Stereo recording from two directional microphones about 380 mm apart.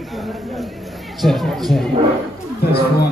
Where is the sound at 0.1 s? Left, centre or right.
Centre.